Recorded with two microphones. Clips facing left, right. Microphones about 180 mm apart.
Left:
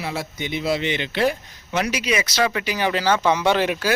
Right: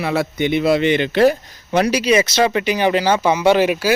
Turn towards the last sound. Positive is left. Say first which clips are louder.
# right 5 dB
turn(degrees=-10)  # may be behind; listen again after turning